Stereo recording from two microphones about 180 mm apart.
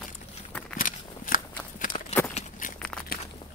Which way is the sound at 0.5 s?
10° left (ahead or behind).